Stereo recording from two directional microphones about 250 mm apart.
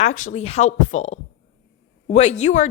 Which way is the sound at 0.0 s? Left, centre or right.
Left.